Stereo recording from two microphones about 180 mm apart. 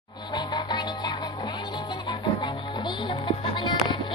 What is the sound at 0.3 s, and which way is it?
Music, 25° left (ahead or behind).